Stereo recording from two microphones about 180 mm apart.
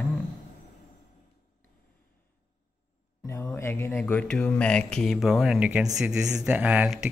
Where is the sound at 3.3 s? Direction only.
15° left (ahead or behind).